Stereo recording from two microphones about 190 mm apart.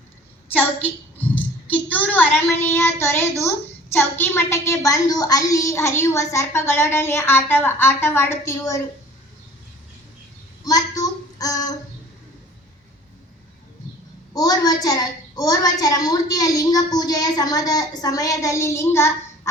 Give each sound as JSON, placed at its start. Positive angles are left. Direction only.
{"t": 1.2, "sound": "a sound", "side_deg": 10}
{"t": 2.7, "sound": "a woman's voice", "side_deg": 15}
{"t": 10.6, "sound": "child singing", "side_deg": 20}
{"t": 14.3, "sound": "a woman's voice", "side_deg": 20}